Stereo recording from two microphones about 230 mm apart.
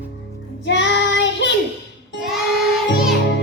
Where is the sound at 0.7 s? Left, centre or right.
Left.